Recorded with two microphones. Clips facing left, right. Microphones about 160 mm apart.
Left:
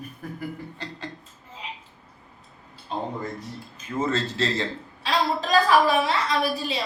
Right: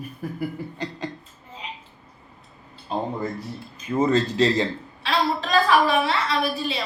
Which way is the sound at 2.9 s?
10° right (ahead or behind).